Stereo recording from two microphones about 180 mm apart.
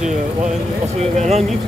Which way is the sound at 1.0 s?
35° right (ahead or behind).